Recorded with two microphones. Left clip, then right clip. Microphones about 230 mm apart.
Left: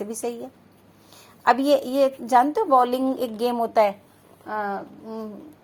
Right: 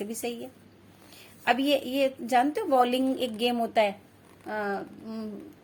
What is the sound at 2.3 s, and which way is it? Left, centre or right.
Speech, centre.